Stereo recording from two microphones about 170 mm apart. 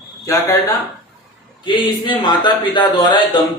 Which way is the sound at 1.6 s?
30° left (ahead or behind).